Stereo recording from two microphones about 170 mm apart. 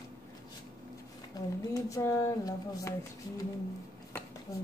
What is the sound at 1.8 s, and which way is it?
Speech, 20° left (ahead or behind).